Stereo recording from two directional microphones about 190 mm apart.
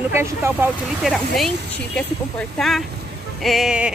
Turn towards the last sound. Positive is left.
turn(degrees=-5)  # may be behind; listen again after turning